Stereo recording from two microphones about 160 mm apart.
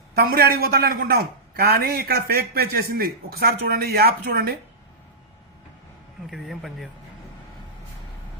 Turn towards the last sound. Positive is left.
turn(degrees=0)  # may be behind; listen again after turning